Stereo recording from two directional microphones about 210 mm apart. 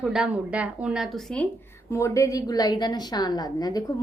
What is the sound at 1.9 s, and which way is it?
A woman's voice, 15° left (ahead or behind).